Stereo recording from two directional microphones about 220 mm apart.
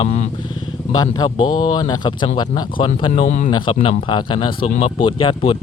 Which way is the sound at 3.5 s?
20° left (ahead or behind).